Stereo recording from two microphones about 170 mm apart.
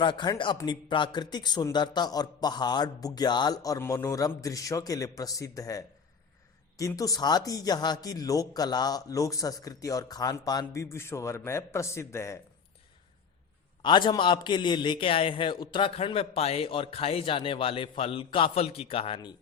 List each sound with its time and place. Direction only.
0.0 s speech: 25° left (ahead or behind)
13.8 s a man's voice: 25° left (ahead or behind)